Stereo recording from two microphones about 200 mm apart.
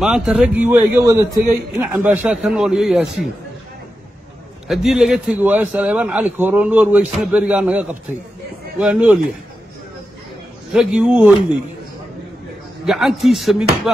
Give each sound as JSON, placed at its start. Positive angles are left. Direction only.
{"t": 0.0, "sound": "a man's voice", "side_deg": -5}
{"t": 4.6, "sound": "a man's voice", "side_deg": 0}
{"t": 10.7, "sound": "a man's voice", "side_deg": -5}
{"t": 12.8, "sound": "a man's voice", "side_deg": 0}